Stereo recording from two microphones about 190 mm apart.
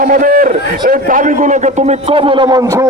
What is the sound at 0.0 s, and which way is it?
A man's voice, 45° right (ahead or behind).